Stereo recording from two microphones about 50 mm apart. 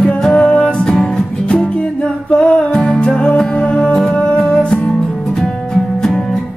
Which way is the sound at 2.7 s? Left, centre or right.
Centre.